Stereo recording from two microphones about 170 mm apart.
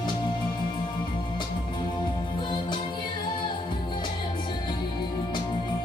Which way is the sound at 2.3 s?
25° left (ahead or behind).